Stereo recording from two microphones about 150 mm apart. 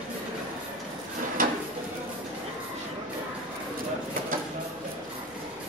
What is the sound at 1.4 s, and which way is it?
Drawer open or close, 65° right (ahead or behind).